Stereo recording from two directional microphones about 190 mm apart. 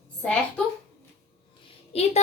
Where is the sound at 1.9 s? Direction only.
30° left (ahead or behind).